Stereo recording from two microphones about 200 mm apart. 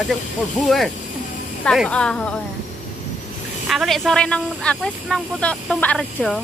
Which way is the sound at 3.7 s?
Centre (ahead or behind).